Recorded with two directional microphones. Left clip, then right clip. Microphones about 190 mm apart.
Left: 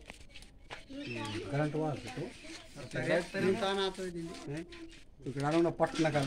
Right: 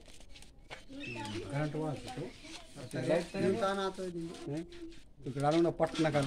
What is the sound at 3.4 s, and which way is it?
Speech, 35° right (ahead or behind).